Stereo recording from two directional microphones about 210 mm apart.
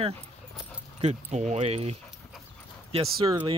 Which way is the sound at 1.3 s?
30° right (ahead or behind).